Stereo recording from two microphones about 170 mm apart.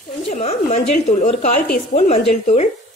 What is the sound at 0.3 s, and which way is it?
A woman's voice, 45° left (ahead or behind).